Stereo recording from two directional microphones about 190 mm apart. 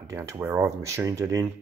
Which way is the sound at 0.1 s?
15° right (ahead or behind).